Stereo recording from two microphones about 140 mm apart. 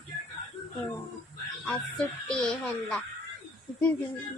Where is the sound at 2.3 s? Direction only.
5° left (ahead or behind).